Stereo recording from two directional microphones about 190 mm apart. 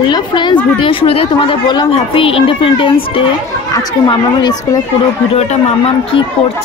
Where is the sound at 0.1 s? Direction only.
25° left (ahead or behind).